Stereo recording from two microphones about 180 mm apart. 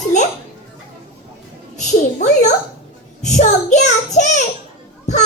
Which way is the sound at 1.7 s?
40° left (ahead or behind).